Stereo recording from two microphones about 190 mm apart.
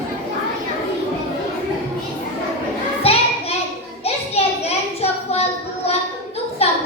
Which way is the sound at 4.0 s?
30° left (ahead or behind).